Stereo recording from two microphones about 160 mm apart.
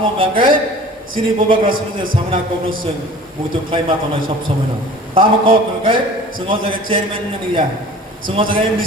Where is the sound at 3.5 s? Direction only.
35° right (ahead or behind).